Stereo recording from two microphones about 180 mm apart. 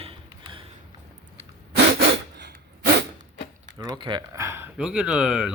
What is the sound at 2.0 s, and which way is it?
Rub, 80° right.